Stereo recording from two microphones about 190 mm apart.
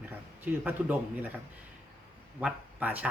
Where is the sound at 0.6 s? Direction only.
10° right (ahead or behind).